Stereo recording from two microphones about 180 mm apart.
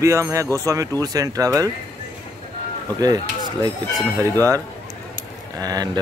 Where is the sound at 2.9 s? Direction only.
20° right (ahead or behind).